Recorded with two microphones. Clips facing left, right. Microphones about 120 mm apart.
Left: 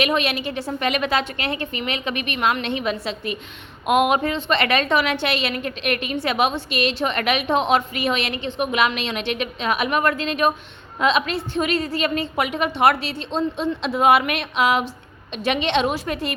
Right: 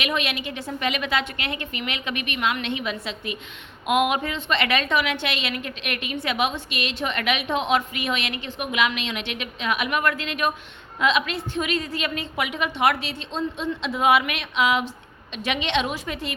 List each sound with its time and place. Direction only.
0.0 s a woman's voice: 35° left (ahead or behind)